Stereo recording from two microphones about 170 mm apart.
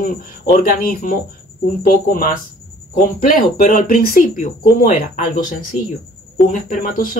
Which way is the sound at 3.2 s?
55° left (ahead or behind).